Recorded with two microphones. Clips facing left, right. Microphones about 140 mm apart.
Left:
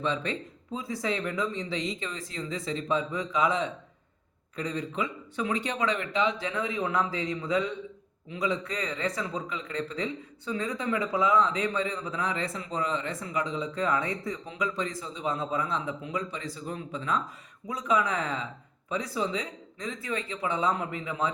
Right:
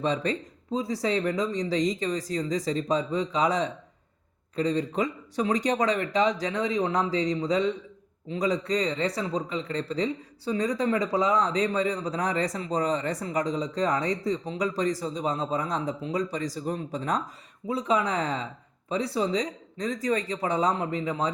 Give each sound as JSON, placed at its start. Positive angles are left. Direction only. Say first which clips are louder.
{"t": 0.0, "sound": "speech", "louder": "right 4 dB", "side_deg": -35}